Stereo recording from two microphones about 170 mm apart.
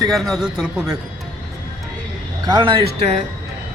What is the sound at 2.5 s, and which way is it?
Speech, 30° right (ahead or behind).